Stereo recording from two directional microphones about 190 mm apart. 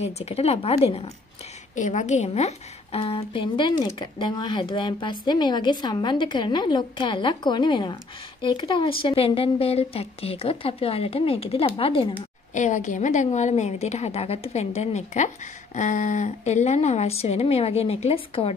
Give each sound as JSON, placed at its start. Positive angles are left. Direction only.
{"t": 0.0, "sound": "a woman's voice", "side_deg": 35}
{"t": 12.5, "sound": "a woman's voice", "side_deg": 40}